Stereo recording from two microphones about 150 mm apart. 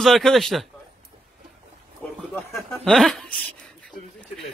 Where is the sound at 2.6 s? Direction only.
Centre (ahead or behind).